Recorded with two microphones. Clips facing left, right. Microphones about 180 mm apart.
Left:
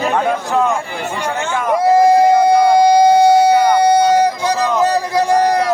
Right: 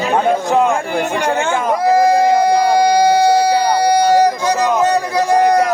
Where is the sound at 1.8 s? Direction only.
25° left (ahead or behind).